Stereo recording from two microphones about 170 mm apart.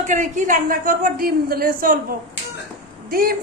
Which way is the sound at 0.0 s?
45° right (ahead or behind).